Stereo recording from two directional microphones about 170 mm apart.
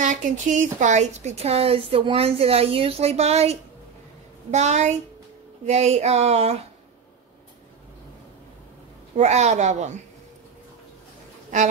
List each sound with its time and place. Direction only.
0.0 s a child's voice: 45° right (ahead or behind)
9.1 s a child's voice: 45° right (ahead or behind)